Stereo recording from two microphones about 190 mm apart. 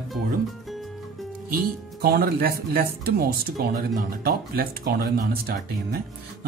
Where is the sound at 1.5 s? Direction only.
55° right (ahead or behind).